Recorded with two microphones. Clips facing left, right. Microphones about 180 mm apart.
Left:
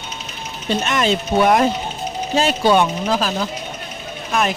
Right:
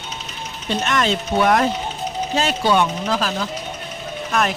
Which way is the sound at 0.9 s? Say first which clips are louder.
Left 1 dB; 10° left (ahead or behind).